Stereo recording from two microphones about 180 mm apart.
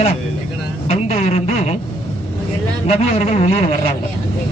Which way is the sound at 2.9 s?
35° left (ahead or behind).